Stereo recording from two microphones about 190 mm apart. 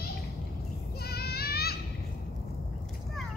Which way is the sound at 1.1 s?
55° left (ahead or behind).